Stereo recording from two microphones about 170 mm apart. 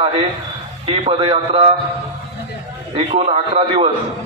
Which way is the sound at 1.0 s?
35° right (ahead or behind).